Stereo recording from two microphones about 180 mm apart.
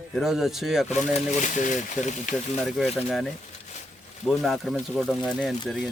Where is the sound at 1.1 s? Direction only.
45° left (ahead or behind).